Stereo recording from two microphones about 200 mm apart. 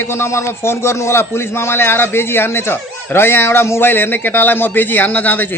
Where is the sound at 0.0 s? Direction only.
10° left (ahead or behind).